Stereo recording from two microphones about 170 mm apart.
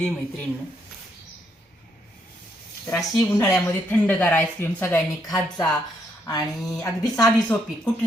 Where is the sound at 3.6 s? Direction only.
10° left (ahead or behind).